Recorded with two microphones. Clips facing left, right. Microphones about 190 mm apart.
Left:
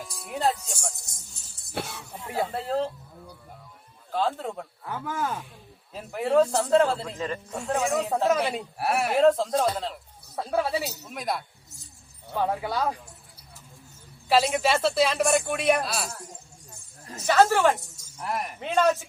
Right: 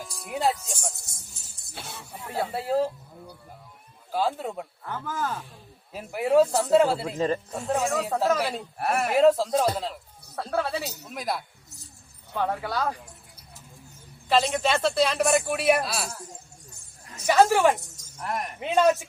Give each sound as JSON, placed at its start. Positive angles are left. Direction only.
{"t": 0.0, "sound": "speech", "side_deg": 0}
{"t": 1.7, "sound": "speech", "side_deg": 60}
{"t": 2.2, "sound": "a woman's voice", "side_deg": 10}
{"t": 2.5, "sound": "speech", "side_deg": -10}
{"t": 4.8, "sound": "a woman's voice", "side_deg": 5}
{"t": 5.9, "sound": "speech", "side_deg": -10}
{"t": 10.3, "sound": "a woman's voice", "side_deg": 10}
{"t": 11.1, "sound": "speech", "side_deg": 0}
{"t": 12.4, "sound": "a woman's voice", "side_deg": 10}
{"t": 14.3, "sound": "speech", "side_deg": 10}
{"t": 17.1, "sound": "snake", "side_deg": 30}
{"t": 17.5, "sound": "speech", "side_deg": -10}
{"t": 18.2, "sound": "speech", "side_deg": 0}
{"t": 18.6, "sound": "speech", "side_deg": -10}